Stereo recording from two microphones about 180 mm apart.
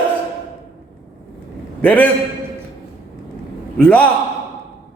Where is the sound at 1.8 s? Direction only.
10° left (ahead or behind).